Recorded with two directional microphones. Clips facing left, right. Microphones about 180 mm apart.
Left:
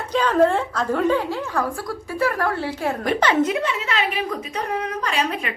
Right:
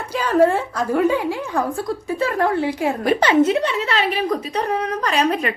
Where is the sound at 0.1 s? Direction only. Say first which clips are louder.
Right 1 dB; 10° right (ahead or behind).